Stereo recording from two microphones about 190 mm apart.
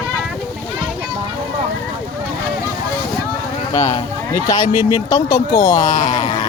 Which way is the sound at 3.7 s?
15° left (ahead or behind).